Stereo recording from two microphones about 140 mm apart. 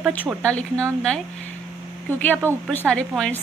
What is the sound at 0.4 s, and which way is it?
Speech, 10° left (ahead or behind).